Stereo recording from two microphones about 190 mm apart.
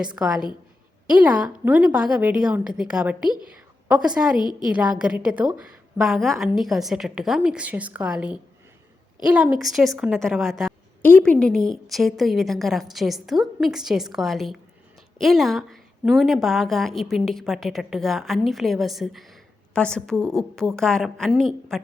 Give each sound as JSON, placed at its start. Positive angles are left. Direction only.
{"t": 0.0, "sound": "a woman's voice", "side_deg": -5}